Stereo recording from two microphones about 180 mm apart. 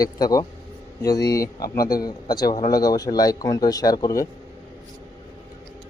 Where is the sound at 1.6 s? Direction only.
55° left (ahead or behind).